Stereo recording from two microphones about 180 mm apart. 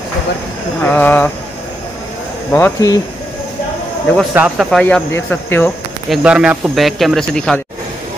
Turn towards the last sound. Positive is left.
turn(degrees=5)  # may be behind; listen again after turning